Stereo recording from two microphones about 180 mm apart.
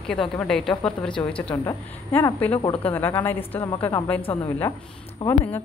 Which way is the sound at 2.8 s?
10° left (ahead or behind).